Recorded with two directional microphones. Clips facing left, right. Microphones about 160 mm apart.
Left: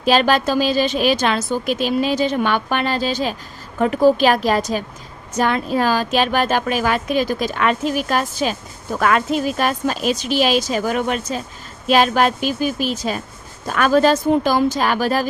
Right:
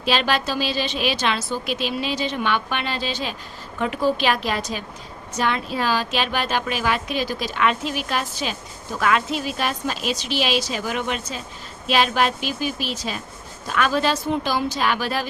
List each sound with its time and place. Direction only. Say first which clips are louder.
0.0 s a woman's voice: left 6 dB; 45° left (ahead or behind)